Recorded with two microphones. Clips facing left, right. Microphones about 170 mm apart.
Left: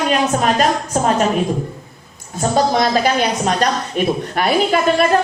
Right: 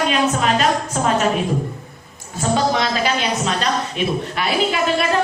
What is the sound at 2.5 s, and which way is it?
Speech, 40° left (ahead or behind).